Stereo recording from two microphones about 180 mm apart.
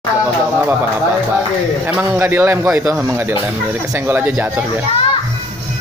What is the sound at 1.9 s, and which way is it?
A man's voice, 10° right (ahead or behind).